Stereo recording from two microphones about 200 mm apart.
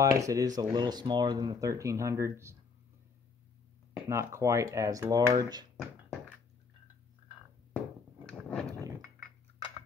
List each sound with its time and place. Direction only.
0.0 s speech: 15° right (ahead or behind)
4.1 s speech: 15° right (ahead or behind)
8.3 s a sound: 5° left (ahead or behind)